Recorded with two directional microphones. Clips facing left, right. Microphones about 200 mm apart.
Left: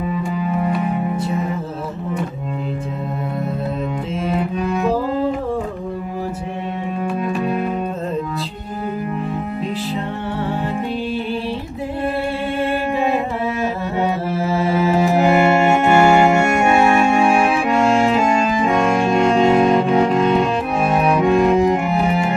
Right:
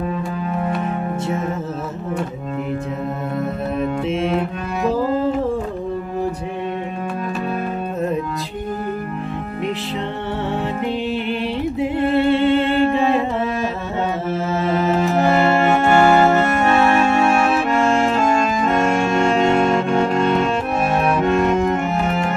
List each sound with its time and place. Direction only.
0.4 s music: 5° left (ahead or behind)
12.3 s music: 25° right (ahead or behind)
14.4 s music: 10° left (ahead or behind)